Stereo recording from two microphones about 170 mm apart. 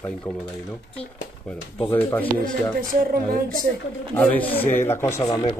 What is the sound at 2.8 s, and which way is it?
Music, 55° right (ahead or behind).